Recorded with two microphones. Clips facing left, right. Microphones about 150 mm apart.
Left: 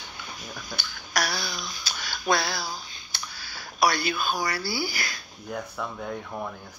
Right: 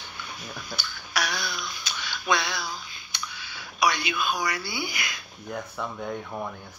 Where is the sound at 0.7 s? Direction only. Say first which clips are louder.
Left 2 dB; 40° left (ahead or behind).